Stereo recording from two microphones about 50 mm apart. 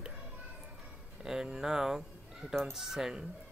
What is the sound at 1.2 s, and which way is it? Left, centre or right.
Speech, centre.